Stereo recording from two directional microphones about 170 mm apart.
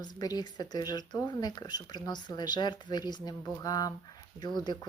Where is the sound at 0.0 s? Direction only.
25° left (ahead or behind).